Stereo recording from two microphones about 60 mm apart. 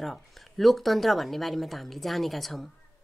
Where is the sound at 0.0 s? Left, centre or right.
Centre.